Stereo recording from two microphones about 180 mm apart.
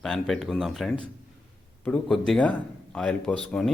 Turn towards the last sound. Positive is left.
turn(degrees=5)  # may be behind; listen again after turning